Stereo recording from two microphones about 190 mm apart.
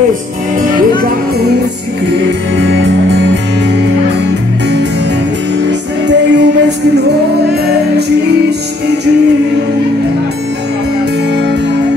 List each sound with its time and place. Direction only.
2.5 s music: 75° right (ahead or behind)
5.7 s music: 65° right (ahead or behind)